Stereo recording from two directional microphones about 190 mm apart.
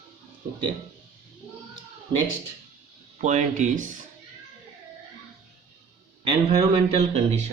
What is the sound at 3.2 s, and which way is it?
Speech, 40° right (ahead or behind).